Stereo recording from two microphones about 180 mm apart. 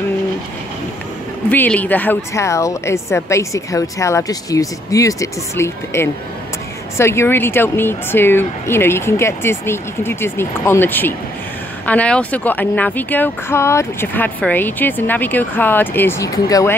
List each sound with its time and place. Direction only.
1.5 s speech: 10° left (ahead or behind)